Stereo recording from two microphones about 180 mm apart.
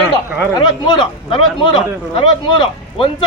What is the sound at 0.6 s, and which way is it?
Speech, 25° left (ahead or behind).